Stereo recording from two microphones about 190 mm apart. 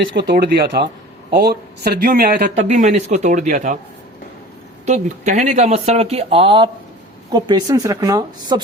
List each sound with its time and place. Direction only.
0.0 s speech: 60° right (ahead or behind)
2.6 s speech: 35° right (ahead or behind)
4.9 s speech: 40° right (ahead or behind); by 8.6 s 20° right (ahead or behind)